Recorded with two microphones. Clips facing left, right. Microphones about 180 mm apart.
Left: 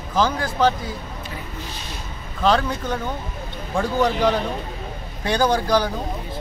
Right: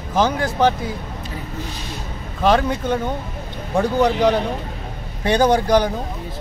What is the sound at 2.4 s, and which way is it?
A man's voice, 20° right (ahead or behind).